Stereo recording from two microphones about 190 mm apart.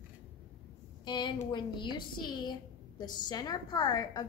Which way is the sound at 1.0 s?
25° left (ahead or behind).